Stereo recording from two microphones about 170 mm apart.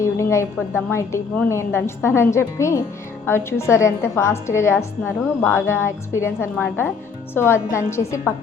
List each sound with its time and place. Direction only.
0.0 s a woman's voice: 15° left (ahead or behind)